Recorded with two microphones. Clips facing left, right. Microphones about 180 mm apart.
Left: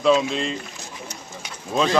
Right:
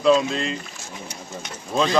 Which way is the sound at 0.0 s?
Centre (ahead or behind).